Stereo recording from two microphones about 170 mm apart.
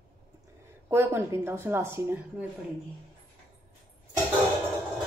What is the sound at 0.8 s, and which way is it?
Speech, 15° right (ahead or behind).